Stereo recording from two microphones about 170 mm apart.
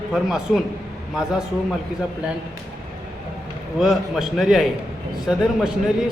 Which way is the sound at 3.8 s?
Centre (ahead or behind).